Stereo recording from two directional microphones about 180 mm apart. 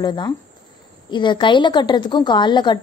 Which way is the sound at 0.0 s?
25° left (ahead or behind).